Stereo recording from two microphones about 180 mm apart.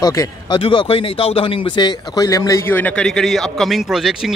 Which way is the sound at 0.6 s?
30° left (ahead or behind).